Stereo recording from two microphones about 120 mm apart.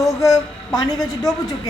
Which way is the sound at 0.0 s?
30° left (ahead or behind).